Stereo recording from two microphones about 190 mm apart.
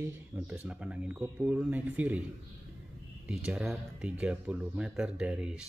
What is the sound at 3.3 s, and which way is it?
Speech, 5° right (ahead or behind).